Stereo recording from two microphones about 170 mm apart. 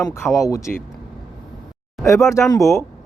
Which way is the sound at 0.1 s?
15° left (ahead or behind).